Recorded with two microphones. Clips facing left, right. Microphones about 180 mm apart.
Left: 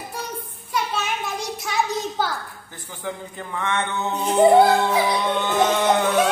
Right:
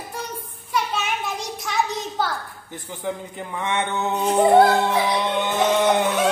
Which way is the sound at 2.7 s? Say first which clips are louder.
Right 3 dB; 20° right (ahead or behind).